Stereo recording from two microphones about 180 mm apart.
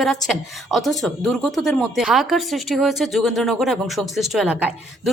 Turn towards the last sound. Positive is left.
turn(degrees=-5)  # may be behind; listen again after turning